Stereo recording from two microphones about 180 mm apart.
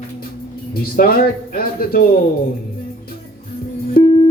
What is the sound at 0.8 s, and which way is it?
Speech, 55° left (ahead or behind).